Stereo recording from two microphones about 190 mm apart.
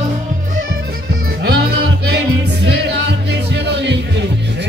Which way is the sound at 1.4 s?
60° right (ahead or behind).